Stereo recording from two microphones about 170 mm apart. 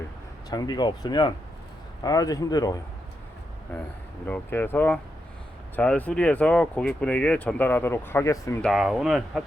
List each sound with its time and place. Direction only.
0.5 s speech: 25° left (ahead or behind)
4.3 s speech: 10° left (ahead or behind)
8.6 s speech: centre (ahead or behind)